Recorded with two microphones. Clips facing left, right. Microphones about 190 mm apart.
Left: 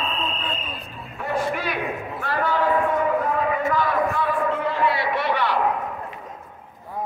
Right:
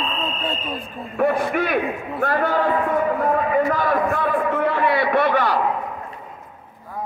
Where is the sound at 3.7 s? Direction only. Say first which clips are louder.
Right 2 dB; 50° right (ahead or behind).